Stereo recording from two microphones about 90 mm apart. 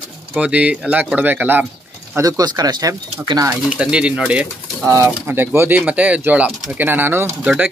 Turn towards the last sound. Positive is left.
turn(degrees=-25)  # may be behind; listen again after turning